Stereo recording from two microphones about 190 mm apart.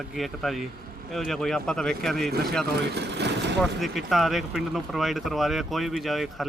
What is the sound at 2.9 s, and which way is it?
Vehicle, 60° right (ahead or behind).